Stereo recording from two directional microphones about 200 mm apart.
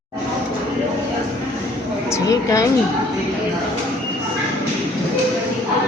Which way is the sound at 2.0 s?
15° left (ahead or behind).